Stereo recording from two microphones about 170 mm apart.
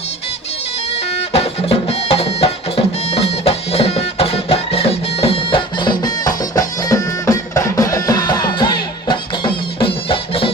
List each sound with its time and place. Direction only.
1.1 s music: 35° left (ahead or behind)